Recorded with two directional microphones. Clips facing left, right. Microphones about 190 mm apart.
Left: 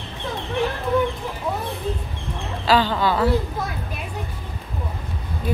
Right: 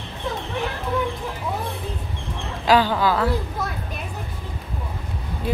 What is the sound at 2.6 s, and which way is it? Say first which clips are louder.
Speech: right 1 dB; 10° right (ahead or behind).